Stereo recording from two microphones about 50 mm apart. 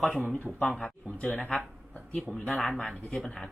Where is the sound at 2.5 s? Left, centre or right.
Centre.